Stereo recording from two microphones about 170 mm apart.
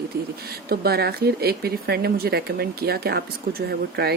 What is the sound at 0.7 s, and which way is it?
Speech, 65° right (ahead or behind).